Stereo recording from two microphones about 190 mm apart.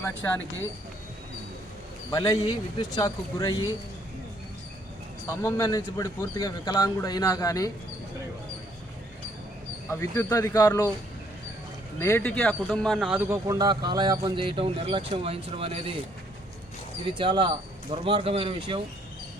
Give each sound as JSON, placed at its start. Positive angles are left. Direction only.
{"t": 0.0, "sound": "speech", "side_deg": 10}
{"t": 2.0, "sound": "speech", "side_deg": 15}
{"t": 5.2, "sound": "speech", "side_deg": 10}
{"t": 9.9, "sound": "speech", "side_deg": 15}
{"t": 11.9, "sound": "speech", "side_deg": 15}
{"t": 17.2, "sound": "speech", "side_deg": -25}